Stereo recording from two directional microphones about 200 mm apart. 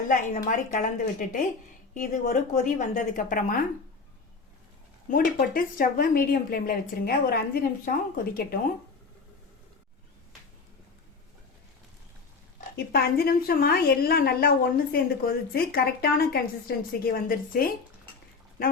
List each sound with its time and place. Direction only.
0.1 s a woman's voice: 40° left (ahead or behind)
5.0 s speech: 45° left (ahead or behind)
12.5 s speech: 50° left (ahead or behind)